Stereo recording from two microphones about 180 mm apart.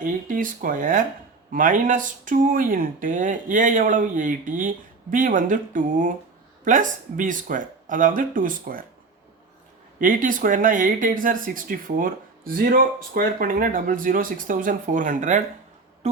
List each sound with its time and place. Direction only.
0.0 s speech: 50° right (ahead or behind)
10.0 s speech: 45° right (ahead or behind)